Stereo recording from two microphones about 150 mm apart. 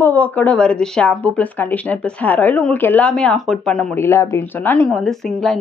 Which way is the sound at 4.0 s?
15° left (ahead or behind).